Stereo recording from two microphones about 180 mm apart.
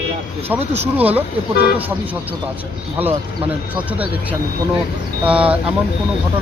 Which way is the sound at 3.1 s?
30° right (ahead or behind).